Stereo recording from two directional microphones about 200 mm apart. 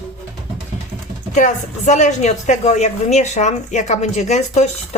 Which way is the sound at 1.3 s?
35° left (ahead or behind).